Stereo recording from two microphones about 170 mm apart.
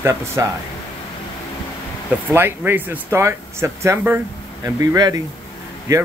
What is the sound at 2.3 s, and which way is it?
Speech, 10° right (ahead or behind).